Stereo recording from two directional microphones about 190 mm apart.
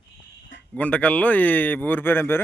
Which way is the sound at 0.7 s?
5° left (ahead or behind).